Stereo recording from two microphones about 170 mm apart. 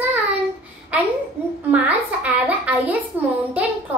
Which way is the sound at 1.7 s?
10° right (ahead or behind).